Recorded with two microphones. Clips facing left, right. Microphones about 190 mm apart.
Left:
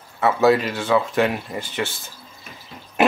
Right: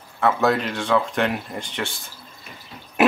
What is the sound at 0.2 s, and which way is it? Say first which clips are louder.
Speech: left 3 dB; 5° left (ahead or behind).